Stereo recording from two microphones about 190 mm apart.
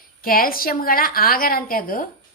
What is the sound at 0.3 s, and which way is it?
A woman's voice, 50° left (ahead or behind).